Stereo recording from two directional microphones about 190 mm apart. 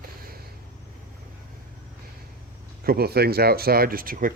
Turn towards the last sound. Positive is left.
turn(degrees=-45)  # may be behind; listen again after turning